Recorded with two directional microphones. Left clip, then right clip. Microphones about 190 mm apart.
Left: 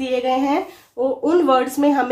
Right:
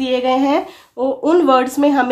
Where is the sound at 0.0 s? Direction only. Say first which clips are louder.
Right 4 dB; 35° right (ahead or behind).